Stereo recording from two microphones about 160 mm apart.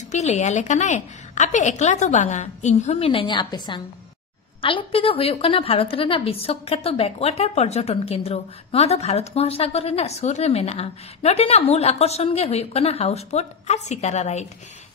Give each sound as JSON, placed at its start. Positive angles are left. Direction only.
{"t": 0.1, "sound": "a woman's voice", "side_deg": 45}